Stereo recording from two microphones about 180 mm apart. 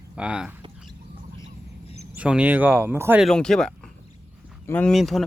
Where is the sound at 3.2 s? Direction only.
5° left (ahead or behind).